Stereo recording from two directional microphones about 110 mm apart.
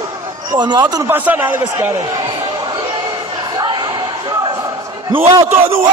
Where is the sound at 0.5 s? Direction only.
40° right (ahead or behind).